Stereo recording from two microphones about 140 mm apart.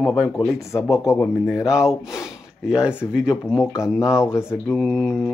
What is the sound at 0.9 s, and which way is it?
Speech, 20° left (ahead or behind).